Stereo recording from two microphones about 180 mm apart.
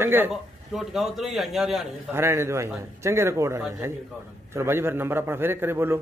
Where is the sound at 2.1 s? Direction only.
15° right (ahead or behind).